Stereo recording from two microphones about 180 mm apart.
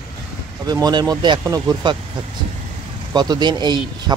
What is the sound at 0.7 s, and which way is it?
A man's voice, 20° right (ahead or behind).